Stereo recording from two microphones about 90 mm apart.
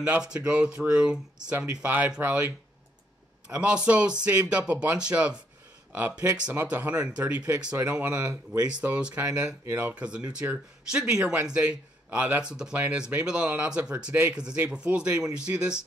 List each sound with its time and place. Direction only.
0.0 s speech: 15° right (ahead or behind)
6.5 s speech: 20° right (ahead or behind)